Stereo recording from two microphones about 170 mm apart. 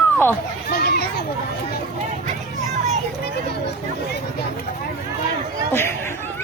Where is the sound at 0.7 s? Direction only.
65° left (ahead or behind).